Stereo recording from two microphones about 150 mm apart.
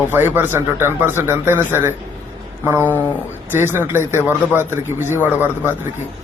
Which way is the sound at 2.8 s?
10° left (ahead or behind).